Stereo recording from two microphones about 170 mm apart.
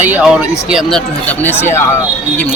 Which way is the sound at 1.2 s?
10° left (ahead or behind).